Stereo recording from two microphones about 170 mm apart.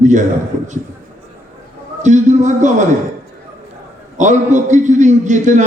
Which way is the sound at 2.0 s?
45° right (ahead or behind).